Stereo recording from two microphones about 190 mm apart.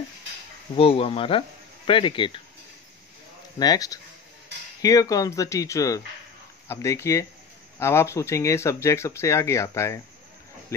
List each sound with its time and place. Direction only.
0.7 s speech: 30° left (ahead or behind)
3.5 s speech: 20° left (ahead or behind)